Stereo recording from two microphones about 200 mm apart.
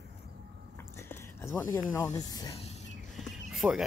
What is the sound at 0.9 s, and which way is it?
Speech, 15° left (ahead or behind).